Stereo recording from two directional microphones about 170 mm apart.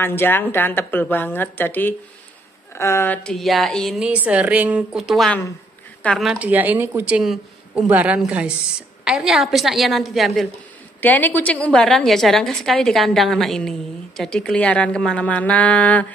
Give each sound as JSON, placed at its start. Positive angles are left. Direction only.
{"t": 0.0, "sound": "a woman's voice", "side_deg": 15}
{"t": 3.3, "sound": "a woman's voice", "side_deg": 0}
{"t": 11.0, "sound": "a woman's voice", "side_deg": 10}